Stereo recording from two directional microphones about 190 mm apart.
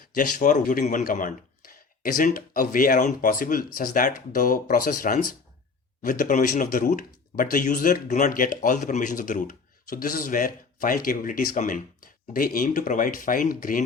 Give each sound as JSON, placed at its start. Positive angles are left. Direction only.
{"t": 0.2, "sound": "speech", "side_deg": 40}